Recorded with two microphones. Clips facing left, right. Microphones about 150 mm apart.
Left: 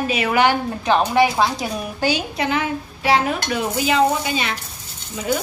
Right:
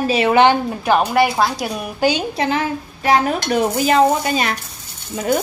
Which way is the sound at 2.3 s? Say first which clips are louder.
Right 2 dB; 35° right (ahead or behind).